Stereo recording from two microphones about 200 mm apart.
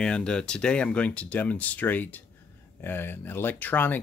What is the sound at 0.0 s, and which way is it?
Speech, 5° left (ahead or behind).